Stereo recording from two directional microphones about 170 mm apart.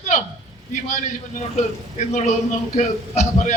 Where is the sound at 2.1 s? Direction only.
45° left (ahead or behind).